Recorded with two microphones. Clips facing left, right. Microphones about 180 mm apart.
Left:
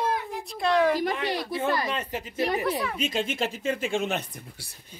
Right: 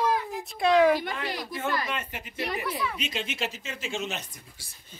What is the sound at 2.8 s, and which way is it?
Speech, 45° left (ahead or behind).